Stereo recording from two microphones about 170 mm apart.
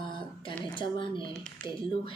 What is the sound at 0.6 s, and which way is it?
Speech, 30° left (ahead or behind).